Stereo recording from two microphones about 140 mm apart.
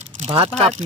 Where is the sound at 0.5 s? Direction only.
50° right (ahead or behind).